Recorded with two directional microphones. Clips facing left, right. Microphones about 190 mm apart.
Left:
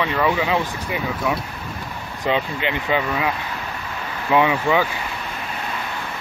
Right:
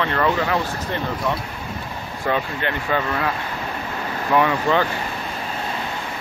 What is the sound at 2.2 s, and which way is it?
Speech, 15° left (ahead or behind).